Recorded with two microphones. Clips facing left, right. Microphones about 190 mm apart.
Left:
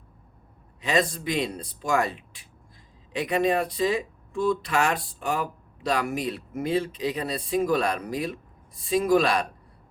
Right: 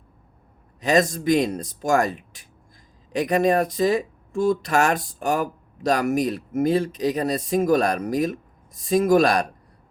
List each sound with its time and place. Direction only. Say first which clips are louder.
0.8 s speech: right 5 dB; 45° right (ahead or behind)